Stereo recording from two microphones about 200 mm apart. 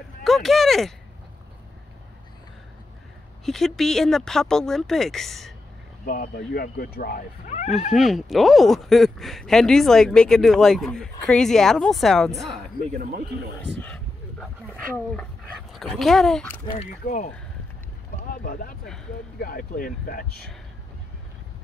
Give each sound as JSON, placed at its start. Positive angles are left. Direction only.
{"t": 0.2, "sound": "speech", "side_deg": 0}
{"t": 3.4, "sound": "speech", "side_deg": 0}
{"t": 6.0, "sound": "speech", "side_deg": 45}
{"t": 7.9, "sound": "speech", "side_deg": 0}
{"t": 12.9, "sound": "speech", "side_deg": -40}
{"t": 13.7, "sound": "a sound", "side_deg": 10}
{"t": 15.1, "sound": "speech", "side_deg": 0}
{"t": 17.0, "sound": "speech", "side_deg": 45}
{"t": 18.3, "sound": "speech", "side_deg": 45}